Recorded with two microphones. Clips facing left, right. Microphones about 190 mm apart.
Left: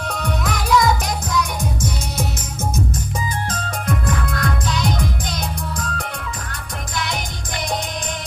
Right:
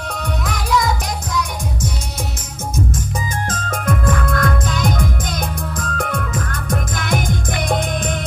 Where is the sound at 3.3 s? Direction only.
45° right (ahead or behind).